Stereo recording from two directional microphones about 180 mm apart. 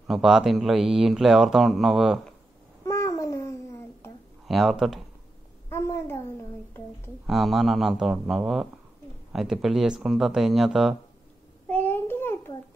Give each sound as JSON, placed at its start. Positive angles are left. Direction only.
{"t": 0.0, "sound": "speech", "side_deg": -5}
{"t": 2.8, "sound": "cat", "side_deg": 20}
{"t": 4.5, "sound": "speech", "side_deg": 0}
{"t": 5.7, "sound": "a sound", "side_deg": 15}
{"t": 7.2, "sound": "speech", "side_deg": 0}
{"t": 11.7, "sound": "child singing", "side_deg": 10}